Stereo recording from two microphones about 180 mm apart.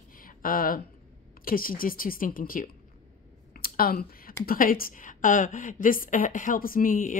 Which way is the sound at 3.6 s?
55° left (ahead or behind).